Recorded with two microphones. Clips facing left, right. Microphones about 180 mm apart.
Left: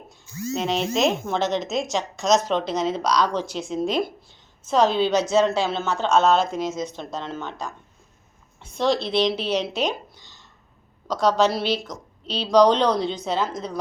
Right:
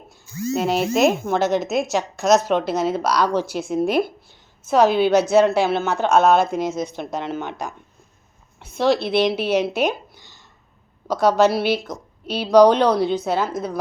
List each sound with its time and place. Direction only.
0.1 s a woman's voice: 5° right (ahead or behind)
9.0 s a woman's voice: 55° right (ahead or behind)
9.7 s a sound: 10° right (ahead or behind)
11.1 s speech: 10° right (ahead or behind)